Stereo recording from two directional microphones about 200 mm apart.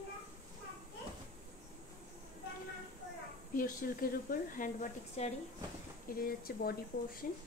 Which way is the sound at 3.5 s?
45° left (ahead or behind).